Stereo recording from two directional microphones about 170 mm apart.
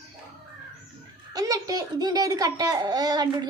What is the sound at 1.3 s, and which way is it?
A child's voice, 20° right (ahead or behind).